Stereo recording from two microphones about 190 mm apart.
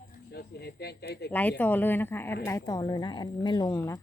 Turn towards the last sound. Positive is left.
turn(degrees=15)  # may be behind; listen again after turning